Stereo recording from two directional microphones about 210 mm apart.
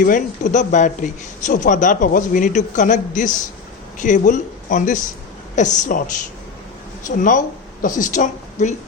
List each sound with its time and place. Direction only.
0.0 s a man's voice: 35° left (ahead or behind)
7.2 s a woman's voice: 40° left (ahead or behind)